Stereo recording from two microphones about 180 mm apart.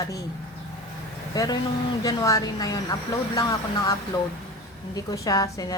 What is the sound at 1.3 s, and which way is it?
A woman's voice, 20° left (ahead or behind).